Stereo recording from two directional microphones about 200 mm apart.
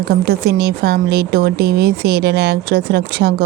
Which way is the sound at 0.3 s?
55° right (ahead or behind).